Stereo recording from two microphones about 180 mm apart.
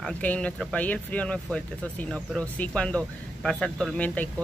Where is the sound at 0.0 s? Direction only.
5° left (ahead or behind).